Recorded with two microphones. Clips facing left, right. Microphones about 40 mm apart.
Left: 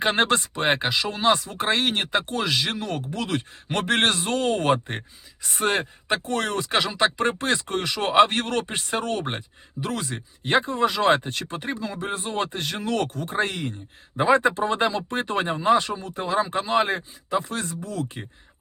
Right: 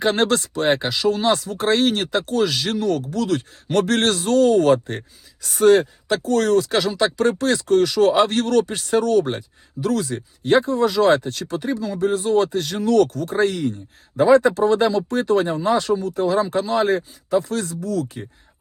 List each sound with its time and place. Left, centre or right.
0.0 s speech: left